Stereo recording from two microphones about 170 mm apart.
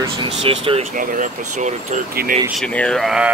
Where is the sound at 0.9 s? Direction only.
50° right (ahead or behind).